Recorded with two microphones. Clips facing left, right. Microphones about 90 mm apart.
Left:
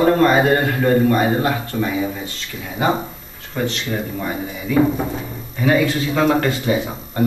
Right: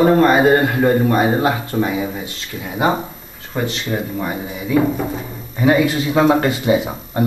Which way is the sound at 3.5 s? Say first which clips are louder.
Right 1 dB; 15° right (ahead or behind).